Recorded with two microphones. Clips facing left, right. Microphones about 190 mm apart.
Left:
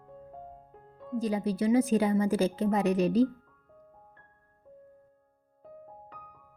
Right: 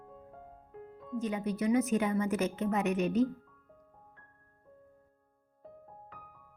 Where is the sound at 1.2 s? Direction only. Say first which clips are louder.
Left 4 dB; 35° left (ahead or behind).